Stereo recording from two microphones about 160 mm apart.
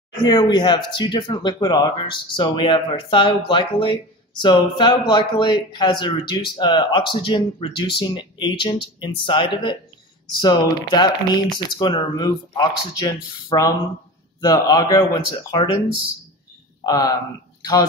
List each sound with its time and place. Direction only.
0.2 s speech: 25° left (ahead or behind)
16.8 s speech: 20° left (ahead or behind)